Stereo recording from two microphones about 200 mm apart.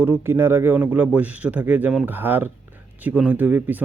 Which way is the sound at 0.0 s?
10° right (ahead or behind).